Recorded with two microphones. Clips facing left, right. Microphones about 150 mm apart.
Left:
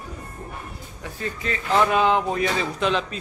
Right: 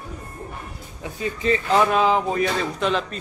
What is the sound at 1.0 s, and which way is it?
Speech, 15° right (ahead or behind).